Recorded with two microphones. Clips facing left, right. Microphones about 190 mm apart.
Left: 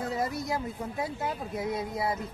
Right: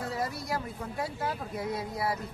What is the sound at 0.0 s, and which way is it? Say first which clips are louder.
Speech: left 3 dB; 20° left (ahead or behind).